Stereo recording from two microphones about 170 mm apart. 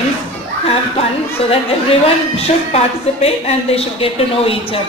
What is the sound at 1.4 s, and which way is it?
Speech, 35° left (ahead or behind).